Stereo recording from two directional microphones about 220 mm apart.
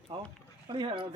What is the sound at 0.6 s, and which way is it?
Speech, 25° right (ahead or behind).